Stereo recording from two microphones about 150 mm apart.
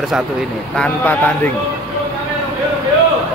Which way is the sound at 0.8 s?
10° left (ahead or behind).